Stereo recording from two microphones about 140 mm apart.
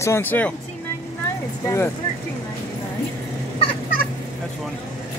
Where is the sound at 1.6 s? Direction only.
20° left (ahead or behind).